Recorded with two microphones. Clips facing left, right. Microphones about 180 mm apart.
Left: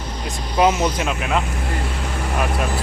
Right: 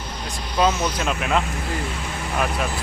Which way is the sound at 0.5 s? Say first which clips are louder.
Left 3 dB; 20° left (ahead or behind).